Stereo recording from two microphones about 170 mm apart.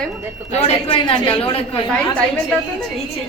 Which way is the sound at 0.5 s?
35° left (ahead or behind).